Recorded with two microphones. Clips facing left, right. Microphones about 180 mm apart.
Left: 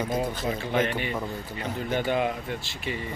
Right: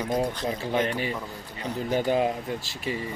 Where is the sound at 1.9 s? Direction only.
35° right (ahead or behind).